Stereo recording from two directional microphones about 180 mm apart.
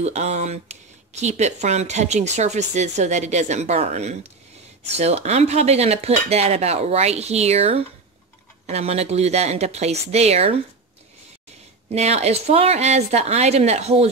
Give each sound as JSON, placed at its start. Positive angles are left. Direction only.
{"t": 0.0, "sound": "speech", "side_deg": -40}
{"t": 11.9, "sound": "speech", "side_deg": -35}